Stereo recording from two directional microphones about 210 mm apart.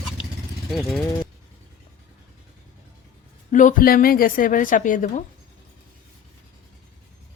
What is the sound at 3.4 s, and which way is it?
A woman's voice, 35° left (ahead or behind).